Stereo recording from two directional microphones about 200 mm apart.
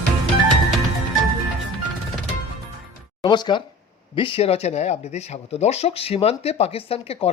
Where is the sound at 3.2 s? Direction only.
20° left (ahead or behind).